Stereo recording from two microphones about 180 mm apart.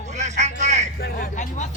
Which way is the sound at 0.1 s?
40° right (ahead or behind).